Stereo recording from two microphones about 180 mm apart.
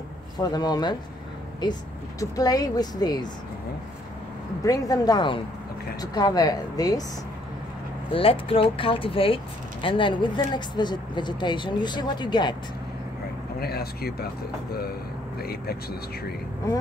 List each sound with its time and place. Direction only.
0.4 s speech: 20° left (ahead or behind)
4.6 s speech: 20° left (ahead or behind)
8.1 s speech: 30° left (ahead or behind)
13.6 s speech: 60° left (ahead or behind)